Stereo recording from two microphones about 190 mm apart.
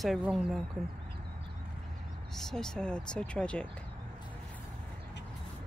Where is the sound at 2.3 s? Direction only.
Centre (ahead or behind).